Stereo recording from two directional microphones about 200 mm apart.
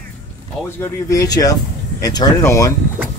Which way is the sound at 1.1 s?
15° left (ahead or behind).